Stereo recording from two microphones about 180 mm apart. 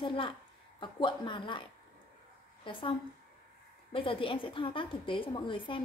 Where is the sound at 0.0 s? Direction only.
30° left (ahead or behind).